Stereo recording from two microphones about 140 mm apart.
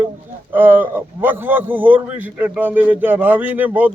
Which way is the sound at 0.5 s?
15° right (ahead or behind).